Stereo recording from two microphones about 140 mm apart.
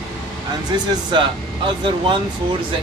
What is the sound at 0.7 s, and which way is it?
Speech, 35° right (ahead or behind).